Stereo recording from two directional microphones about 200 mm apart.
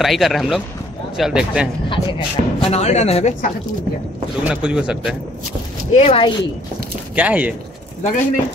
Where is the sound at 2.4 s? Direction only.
35° right (ahead or behind).